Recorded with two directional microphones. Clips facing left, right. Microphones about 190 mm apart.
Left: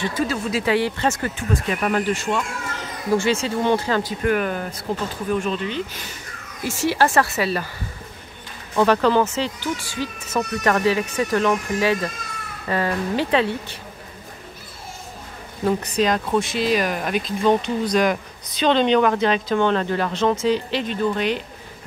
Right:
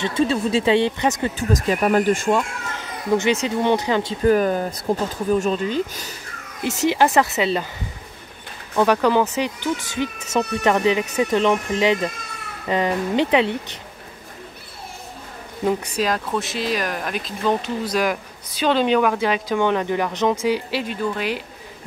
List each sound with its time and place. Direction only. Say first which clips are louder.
0.0 s speech: right 3 dB; 25° right (ahead or behind)
1.5 s speech: right 4 dB; 35° right (ahead or behind)
3.2 s speech: right 1 dB; 20° right (ahead or behind); by 5.8 s 40° right (ahead or behind)
6.6 s speech: right 2 dB; 20° right (ahead or behind)
8.7 s speech: even; 15° right (ahead or behind)
15.6 s speech: left 1 dB; 5° right (ahead or behind)